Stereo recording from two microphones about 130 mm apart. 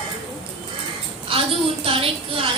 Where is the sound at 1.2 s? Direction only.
45° right (ahead or behind).